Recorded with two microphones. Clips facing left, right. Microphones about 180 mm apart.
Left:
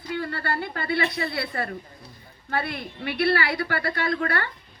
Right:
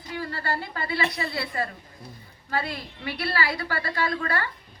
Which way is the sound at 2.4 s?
60° left (ahead or behind).